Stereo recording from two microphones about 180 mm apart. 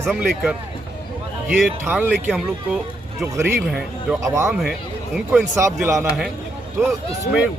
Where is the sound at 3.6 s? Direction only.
Centre (ahead or behind).